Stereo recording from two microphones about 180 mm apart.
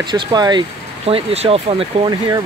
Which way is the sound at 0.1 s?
25° right (ahead or behind).